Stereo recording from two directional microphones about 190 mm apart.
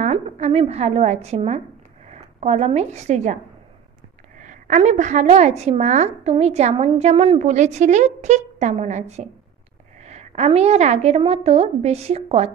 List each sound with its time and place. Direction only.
0.0 s a woman's voice: 35° right (ahead or behind)
4.4 s a woman's voice: 40° right (ahead or behind)